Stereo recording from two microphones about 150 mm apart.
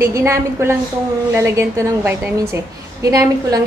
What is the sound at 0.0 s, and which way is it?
A woman's voice, 20° right (ahead or behind).